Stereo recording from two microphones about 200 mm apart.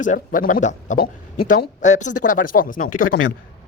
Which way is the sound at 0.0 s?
40° left (ahead or behind).